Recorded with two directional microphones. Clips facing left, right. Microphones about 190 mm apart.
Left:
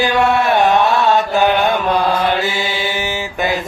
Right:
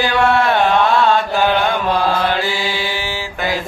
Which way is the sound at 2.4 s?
20° left (ahead or behind).